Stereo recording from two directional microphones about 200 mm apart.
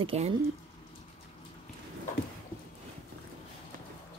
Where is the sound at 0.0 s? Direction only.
30° right (ahead or behind).